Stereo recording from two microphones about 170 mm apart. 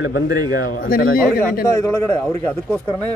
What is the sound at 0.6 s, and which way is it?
Speech, 55° left (ahead or behind).